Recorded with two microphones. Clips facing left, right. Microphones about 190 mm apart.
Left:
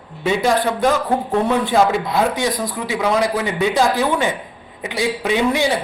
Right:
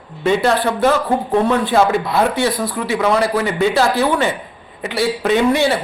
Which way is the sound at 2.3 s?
15° left (ahead or behind).